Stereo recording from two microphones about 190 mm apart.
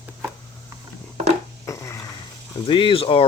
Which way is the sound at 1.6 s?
15° left (ahead or behind).